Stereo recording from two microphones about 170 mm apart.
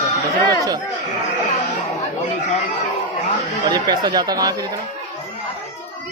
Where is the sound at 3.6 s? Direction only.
25° right (ahead or behind).